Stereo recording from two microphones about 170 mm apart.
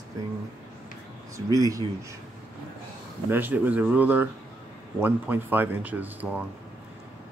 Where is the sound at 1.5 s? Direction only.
20° right (ahead or behind).